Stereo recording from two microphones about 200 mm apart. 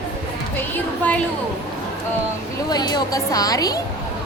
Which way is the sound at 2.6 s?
20° left (ahead or behind).